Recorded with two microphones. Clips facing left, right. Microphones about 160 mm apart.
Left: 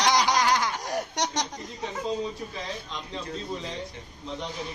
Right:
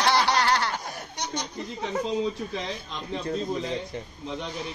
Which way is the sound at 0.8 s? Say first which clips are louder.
Left 6 dB; 90° left.